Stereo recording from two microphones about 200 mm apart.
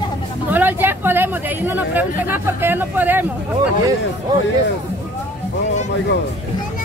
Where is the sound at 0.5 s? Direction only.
10° right (ahead or behind).